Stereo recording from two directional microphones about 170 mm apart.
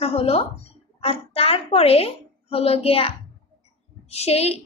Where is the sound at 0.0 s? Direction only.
35° left (ahead or behind).